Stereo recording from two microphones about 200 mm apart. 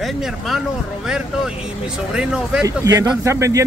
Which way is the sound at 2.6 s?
15° right (ahead or behind).